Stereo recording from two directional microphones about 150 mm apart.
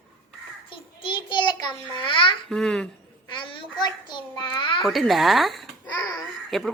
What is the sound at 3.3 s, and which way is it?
A child's voice, 30° left (ahead or behind).